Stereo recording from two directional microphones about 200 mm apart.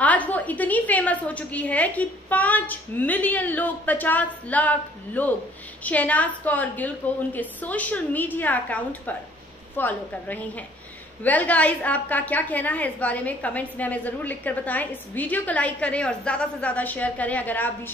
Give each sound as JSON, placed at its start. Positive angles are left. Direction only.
{"t": 0.0, "sound": "a woman's voice", "side_deg": 5}